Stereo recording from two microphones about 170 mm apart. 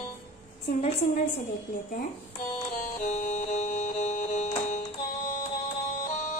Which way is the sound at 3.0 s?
45° left (ahead or behind).